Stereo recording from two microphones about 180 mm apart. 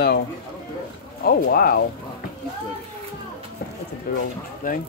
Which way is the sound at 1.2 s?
55° left (ahead or behind).